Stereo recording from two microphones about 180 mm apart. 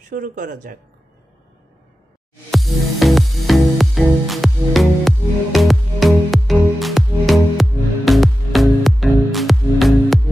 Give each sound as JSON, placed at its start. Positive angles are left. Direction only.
{"t": 0.1, "sound": "speech", "side_deg": -45}
{"t": 2.5, "sound": "music", "side_deg": 0}